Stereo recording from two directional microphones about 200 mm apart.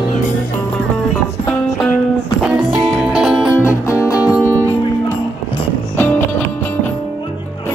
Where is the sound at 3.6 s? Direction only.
15° left (ahead or behind).